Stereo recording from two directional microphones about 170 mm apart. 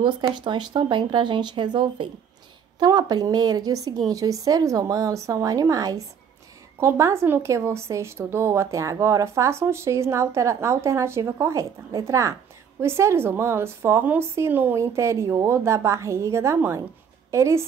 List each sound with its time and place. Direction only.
0.0 s speech: 25° right (ahead or behind)